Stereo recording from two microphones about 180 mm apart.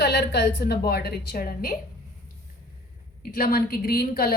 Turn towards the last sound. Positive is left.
turn(degrees=60)  # may be behind; listen again after turning